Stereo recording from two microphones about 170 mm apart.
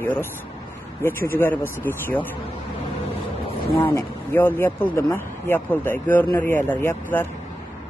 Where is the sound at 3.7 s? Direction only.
15° left (ahead or behind).